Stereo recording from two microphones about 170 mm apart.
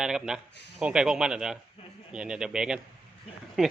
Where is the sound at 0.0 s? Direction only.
5° right (ahead or behind).